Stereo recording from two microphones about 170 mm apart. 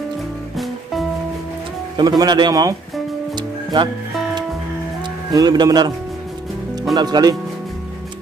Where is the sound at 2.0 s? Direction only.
25° right (ahead or behind).